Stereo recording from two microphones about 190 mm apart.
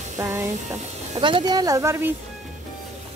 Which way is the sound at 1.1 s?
25° right (ahead or behind).